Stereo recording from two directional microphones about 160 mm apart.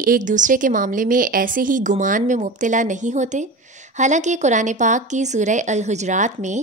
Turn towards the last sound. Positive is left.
turn(degrees=-50)  # may be behind; listen again after turning